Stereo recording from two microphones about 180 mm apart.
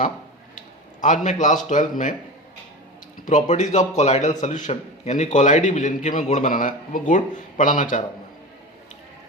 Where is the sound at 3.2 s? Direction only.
40° left (ahead or behind).